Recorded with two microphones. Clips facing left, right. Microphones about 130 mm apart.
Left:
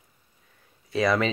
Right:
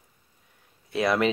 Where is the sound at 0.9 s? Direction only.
5° right (ahead or behind).